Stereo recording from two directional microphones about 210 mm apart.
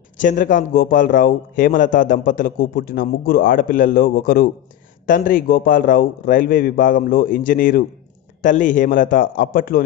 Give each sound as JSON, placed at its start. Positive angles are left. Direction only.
{"t": 0.2, "sound": "a man's voice", "side_deg": 40}